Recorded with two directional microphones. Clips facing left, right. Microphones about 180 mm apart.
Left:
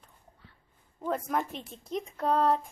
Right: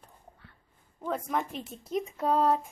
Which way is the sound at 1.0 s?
Centre (ahead or behind).